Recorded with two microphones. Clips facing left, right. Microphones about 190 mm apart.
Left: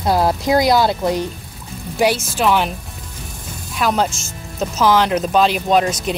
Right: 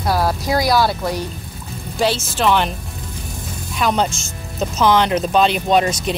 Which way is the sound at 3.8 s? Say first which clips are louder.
Even; 5° left (ahead or behind).